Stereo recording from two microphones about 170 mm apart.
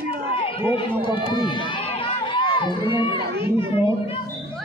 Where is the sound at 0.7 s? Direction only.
30° left (ahead or behind).